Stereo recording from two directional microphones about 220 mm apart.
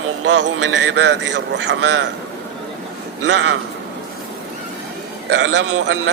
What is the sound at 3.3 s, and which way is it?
Speech, 55° right (ahead or behind).